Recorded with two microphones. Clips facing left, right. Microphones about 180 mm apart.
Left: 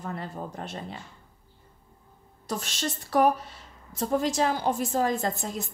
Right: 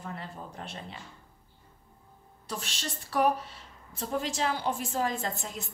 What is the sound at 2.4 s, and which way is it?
A woman's voice, 40° left (ahead or behind).